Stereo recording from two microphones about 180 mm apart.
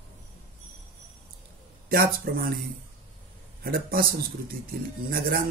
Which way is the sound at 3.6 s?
55° right (ahead or behind).